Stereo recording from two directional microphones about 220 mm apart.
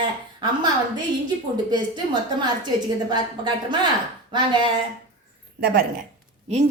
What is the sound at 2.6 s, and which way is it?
A woman's voice, 20° right (ahead or behind).